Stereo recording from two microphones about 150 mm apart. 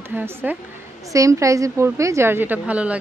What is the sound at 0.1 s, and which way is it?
A woman's voice, 15° right (ahead or behind).